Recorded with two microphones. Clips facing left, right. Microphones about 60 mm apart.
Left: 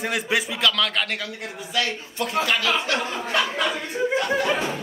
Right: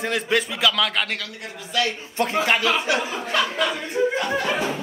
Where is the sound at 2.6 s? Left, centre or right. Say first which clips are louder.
Right 2 dB; centre.